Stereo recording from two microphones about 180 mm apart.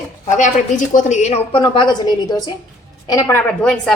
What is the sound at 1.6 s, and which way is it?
A woman's voice, 25° left (ahead or behind).